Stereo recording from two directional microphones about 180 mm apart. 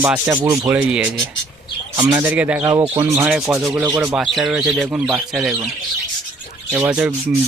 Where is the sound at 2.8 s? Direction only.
25° right (ahead or behind).